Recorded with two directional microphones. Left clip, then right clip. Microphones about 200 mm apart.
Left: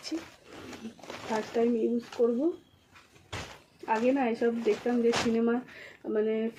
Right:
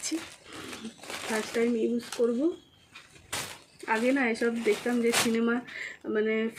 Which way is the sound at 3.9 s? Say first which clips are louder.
Right 1 dB; 20° right (ahead or behind).